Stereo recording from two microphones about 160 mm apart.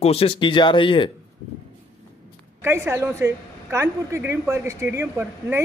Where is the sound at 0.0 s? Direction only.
40° left (ahead or behind).